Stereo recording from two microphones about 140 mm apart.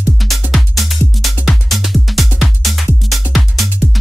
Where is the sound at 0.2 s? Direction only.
Centre (ahead or behind).